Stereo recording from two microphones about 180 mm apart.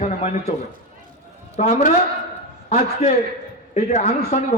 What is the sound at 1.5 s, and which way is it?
A man's voice, 35° left (ahead or behind).